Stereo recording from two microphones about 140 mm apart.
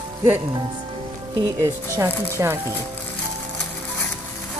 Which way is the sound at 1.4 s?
20° right (ahead or behind).